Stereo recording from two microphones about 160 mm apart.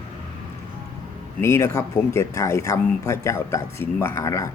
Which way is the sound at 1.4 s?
15° left (ahead or behind).